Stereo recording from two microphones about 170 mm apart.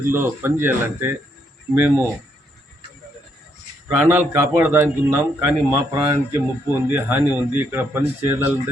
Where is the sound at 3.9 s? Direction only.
10° right (ahead or behind).